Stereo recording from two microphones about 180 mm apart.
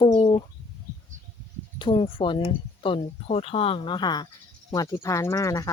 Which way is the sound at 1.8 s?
30° left (ahead or behind).